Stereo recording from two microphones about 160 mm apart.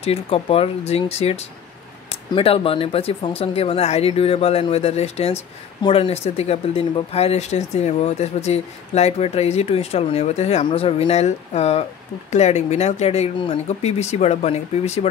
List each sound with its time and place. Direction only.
0.0 s speech: 35° left (ahead or behind)